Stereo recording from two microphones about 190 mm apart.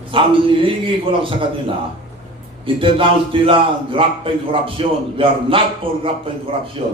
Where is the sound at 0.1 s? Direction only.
25° right (ahead or behind).